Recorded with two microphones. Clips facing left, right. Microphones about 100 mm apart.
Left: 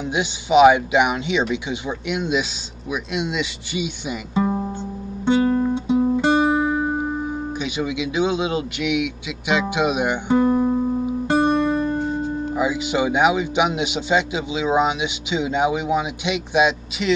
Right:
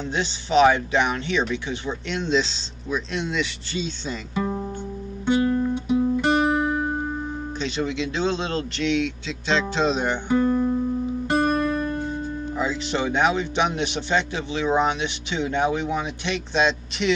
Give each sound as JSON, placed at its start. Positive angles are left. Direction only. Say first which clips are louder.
{"t": 0.0, "sound": "speech", "louder": "left 3 dB", "side_deg": 15}
{"t": 5.2, "sound": "music", "louder": "left 3 dB", "side_deg": 25}
{"t": 7.5, "sound": "speech", "louder": "right 2 dB", "side_deg": 10}
{"t": 11.2, "sound": "music", "louder": "left 3 dB", "side_deg": 25}
{"t": 12.5, "sound": "speech", "louder": "left 4 dB", "side_deg": 10}